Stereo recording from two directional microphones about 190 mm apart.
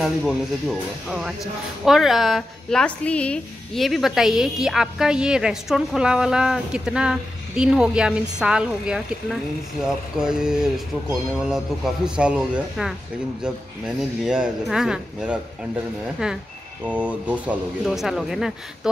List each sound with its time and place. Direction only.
0.0 s speech: centre (ahead or behind)